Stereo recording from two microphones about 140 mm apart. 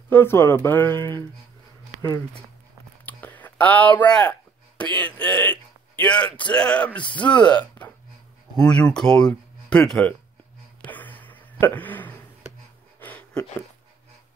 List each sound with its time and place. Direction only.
0.1 s speech: 15° left (ahead or behind)
3.1 s speech: 10° left (ahead or behind)
7.0 s speech: 35° left (ahead or behind)
7.2 s speech: 10° left (ahead or behind)
10.8 s a sound: 10° left (ahead or behind)
11.6 s speech: 10° left (ahead or behind)
13.0 s a sound: 10° left (ahead or behind)